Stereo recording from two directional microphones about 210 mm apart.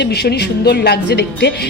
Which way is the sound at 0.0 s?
50° left (ahead or behind).